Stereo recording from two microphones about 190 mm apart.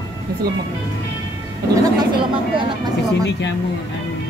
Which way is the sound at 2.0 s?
25° right (ahead or behind).